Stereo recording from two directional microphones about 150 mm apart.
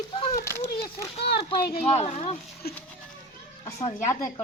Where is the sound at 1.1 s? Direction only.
90° left.